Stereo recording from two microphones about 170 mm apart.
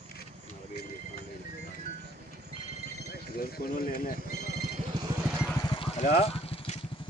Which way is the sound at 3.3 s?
65° left (ahead or behind).